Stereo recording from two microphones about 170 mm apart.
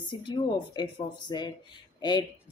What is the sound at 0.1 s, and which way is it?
Speech, 30° left (ahead or behind).